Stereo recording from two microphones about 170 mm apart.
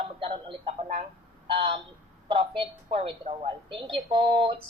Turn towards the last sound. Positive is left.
turn(degrees=-30)  # may be behind; listen again after turning